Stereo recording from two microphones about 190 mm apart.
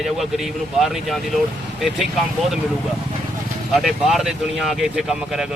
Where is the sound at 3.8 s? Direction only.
Centre (ahead or behind).